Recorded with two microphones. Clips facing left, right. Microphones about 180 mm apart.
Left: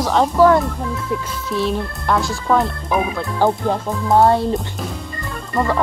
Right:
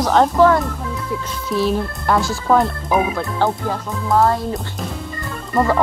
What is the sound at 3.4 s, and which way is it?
Speech, 20° left (ahead or behind).